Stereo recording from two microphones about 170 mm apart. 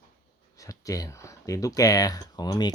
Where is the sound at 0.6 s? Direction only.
20° left (ahead or behind).